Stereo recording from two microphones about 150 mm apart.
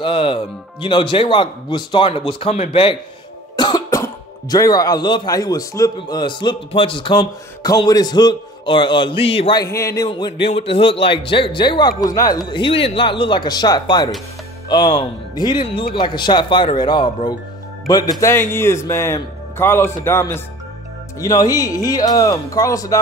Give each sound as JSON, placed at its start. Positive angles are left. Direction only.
{"t": 0.0, "sound": "speech", "side_deg": 35}
{"t": 9.6, "sound": "speech", "side_deg": 20}